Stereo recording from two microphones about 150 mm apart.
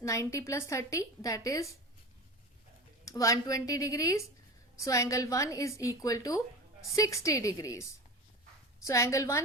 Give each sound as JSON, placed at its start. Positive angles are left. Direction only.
{"t": 0.0, "sound": "a woman's voice", "side_deg": 20}
{"t": 3.0, "sound": "a woman's voice", "side_deg": 20}